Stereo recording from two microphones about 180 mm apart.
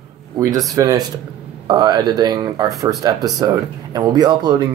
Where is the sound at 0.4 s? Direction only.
20° right (ahead or behind).